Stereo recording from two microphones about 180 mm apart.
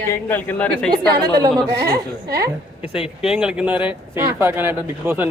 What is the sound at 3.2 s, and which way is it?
Speech, 5° right (ahead or behind).